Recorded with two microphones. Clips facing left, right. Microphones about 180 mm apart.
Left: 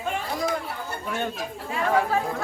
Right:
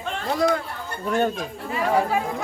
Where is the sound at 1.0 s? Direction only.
40° right (ahead or behind).